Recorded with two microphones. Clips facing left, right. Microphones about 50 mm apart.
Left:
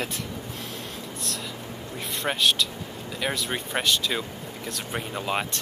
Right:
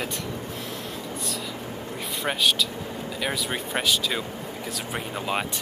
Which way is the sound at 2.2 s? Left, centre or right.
Centre.